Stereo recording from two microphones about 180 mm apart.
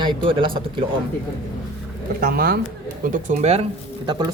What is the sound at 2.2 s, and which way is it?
Speech, 60° right (ahead or behind).